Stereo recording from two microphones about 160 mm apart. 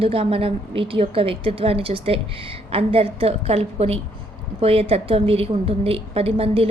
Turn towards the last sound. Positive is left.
turn(degrees=-35)  # may be behind; listen again after turning